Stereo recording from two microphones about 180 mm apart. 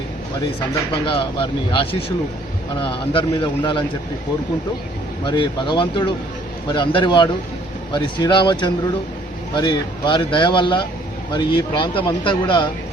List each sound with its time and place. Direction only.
1.0 s speech: 30° left (ahead or behind)
5.2 s speech: 25° left (ahead or behind)